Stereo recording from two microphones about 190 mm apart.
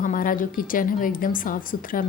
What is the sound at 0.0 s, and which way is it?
A woman's voice, 45° left (ahead or behind).